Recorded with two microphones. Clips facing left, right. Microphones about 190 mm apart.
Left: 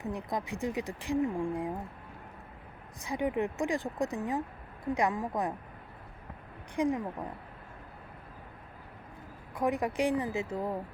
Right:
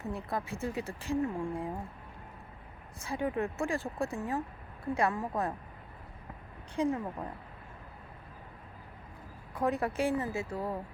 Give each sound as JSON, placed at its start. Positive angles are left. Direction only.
{"t": 0.0, "sound": "speech", "side_deg": 15}
{"t": 3.0, "sound": "speech", "side_deg": 15}
{"t": 6.7, "sound": "speech", "side_deg": 15}
{"t": 9.6, "sound": "speech", "side_deg": 15}